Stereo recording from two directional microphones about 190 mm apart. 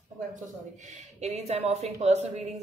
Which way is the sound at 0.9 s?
35° right (ahead or behind).